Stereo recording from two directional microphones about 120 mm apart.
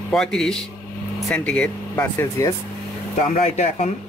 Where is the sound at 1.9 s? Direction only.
20° left (ahead or behind).